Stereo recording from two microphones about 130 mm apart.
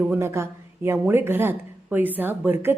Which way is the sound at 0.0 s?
15° right (ahead or behind).